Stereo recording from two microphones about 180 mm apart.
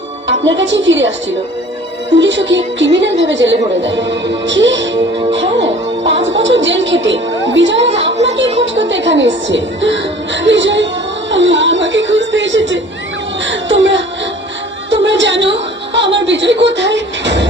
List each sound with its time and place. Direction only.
0.3 s a woman's voice: 80° right
2.1 s a woman's voice: 85° right
3.8 s music: 90° right
7.9 s a woman's voice: 85° right
11.3 s music: 85° right
13.4 s a sound: 90° right
14.8 s music: 85° right
16.0 s speech: 75° right (ahead or behind)